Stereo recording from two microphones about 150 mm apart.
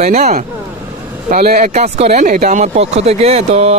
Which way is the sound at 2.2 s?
55° right (ahead or behind).